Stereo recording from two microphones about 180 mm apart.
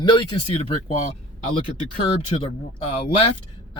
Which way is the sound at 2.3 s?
30° left (ahead or behind).